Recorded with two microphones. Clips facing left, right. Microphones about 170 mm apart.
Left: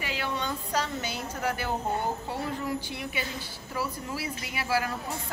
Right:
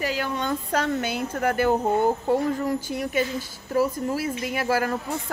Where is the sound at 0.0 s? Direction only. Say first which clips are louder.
Right 6 dB; 45° right (ahead or behind).